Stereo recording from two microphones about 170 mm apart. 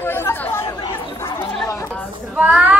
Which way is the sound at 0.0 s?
15° left (ahead or behind).